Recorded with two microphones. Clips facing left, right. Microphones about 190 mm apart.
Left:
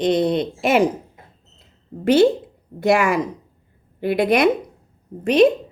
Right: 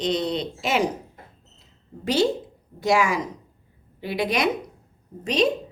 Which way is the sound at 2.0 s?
55° left (ahead or behind).